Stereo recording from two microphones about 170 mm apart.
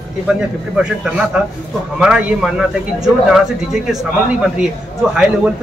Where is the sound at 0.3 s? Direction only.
5° right (ahead or behind).